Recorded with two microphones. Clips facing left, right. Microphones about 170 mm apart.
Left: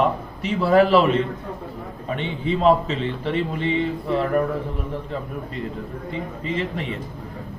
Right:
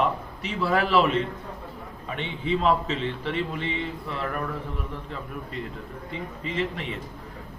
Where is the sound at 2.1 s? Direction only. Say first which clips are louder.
Left 3 dB; 40° left (ahead or behind).